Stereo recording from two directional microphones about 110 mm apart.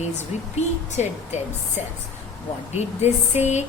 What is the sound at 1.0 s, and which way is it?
Speech, 90° left.